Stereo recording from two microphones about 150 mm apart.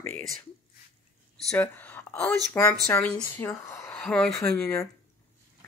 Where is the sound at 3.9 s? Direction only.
5° left (ahead or behind).